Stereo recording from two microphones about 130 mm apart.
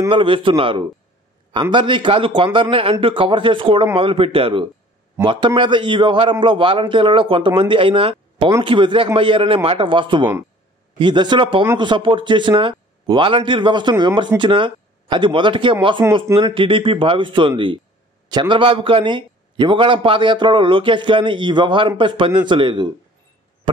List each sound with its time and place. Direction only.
0.1 s a man's voice: 40° right (ahead or behind)